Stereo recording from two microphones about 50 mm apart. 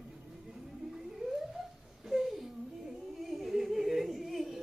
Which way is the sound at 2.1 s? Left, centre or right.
Centre.